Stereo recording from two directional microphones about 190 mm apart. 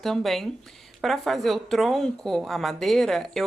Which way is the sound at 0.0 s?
Centre (ahead or behind).